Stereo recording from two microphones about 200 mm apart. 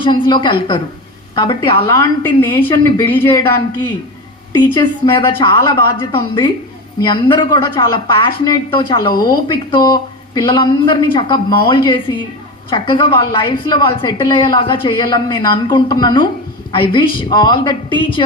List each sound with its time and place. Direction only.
0.0 s speech: 25° left (ahead or behind)
4.5 s speech: 20° left (ahead or behind)